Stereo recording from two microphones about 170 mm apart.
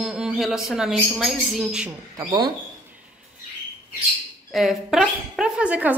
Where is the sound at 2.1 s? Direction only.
25° right (ahead or behind).